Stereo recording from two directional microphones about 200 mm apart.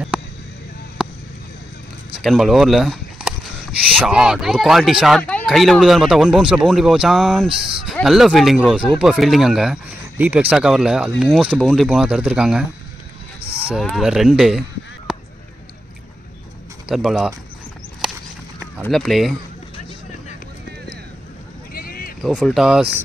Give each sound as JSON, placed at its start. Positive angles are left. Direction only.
{"t": 0.1, "sound": "a sound", "side_deg": -5}
{"t": 2.2, "sound": "speech", "side_deg": 0}
{"t": 13.7, "sound": "speech", "side_deg": 0}
{"t": 15.1, "sound": "a sound", "side_deg": -5}
{"t": 16.9, "sound": "speech", "side_deg": 0}
{"t": 18.0, "sound": "clip-clop", "side_deg": -5}
{"t": 18.6, "sound": "speech", "side_deg": 5}
{"t": 21.7, "sound": "a sound", "side_deg": 45}
{"t": 22.2, "sound": "speech", "side_deg": 0}